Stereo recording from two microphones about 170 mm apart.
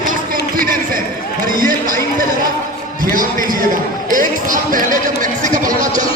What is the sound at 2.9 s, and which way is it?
A man's voice, 55° right (ahead or behind).